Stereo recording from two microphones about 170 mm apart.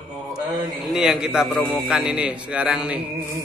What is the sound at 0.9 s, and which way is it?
A man's voice, 5° right (ahead or behind).